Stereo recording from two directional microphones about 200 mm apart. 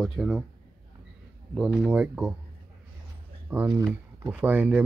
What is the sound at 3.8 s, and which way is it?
Speech, 5° right (ahead or behind).